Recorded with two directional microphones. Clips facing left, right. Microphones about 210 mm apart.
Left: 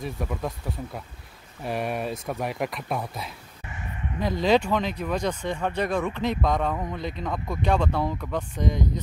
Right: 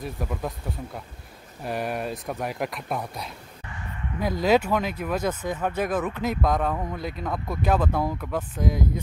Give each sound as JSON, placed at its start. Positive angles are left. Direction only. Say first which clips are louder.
{"t": 0.0, "sound": "speech", "louder": "even", "side_deg": 0}
{"t": 3.6, "sound": "a sound", "louder": "left 1 dB", "side_deg": 20}
{"t": 4.2, "sound": "speech", "louder": "even", "side_deg": -5}